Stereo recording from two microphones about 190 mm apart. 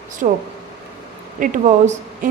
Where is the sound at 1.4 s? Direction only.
40° right (ahead or behind).